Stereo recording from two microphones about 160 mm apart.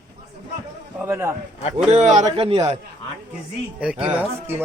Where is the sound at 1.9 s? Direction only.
45° right (ahead or behind).